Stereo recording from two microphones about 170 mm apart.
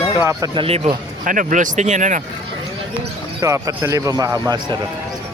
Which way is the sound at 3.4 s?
20° right (ahead or behind).